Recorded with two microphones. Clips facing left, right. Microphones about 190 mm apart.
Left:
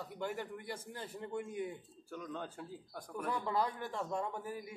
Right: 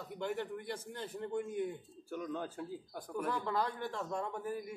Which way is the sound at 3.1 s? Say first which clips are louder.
Right 1 dB; 10° left (ahead or behind).